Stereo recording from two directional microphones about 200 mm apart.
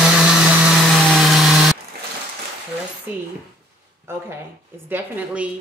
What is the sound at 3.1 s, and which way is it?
Speech, 10° right (ahead or behind).